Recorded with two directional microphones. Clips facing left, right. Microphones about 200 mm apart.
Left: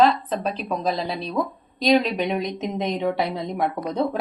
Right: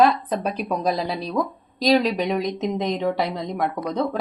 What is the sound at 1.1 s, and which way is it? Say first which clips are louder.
Speech: right 1 dB; centre (ahead or behind).